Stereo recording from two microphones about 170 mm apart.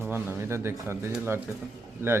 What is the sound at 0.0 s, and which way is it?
Speech, 15° right (ahead or behind).